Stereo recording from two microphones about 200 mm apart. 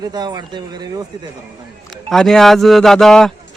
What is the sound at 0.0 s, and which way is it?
Speech, 20° right (ahead or behind).